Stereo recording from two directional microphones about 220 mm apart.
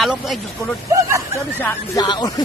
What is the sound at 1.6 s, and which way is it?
Speech, 15° left (ahead or behind).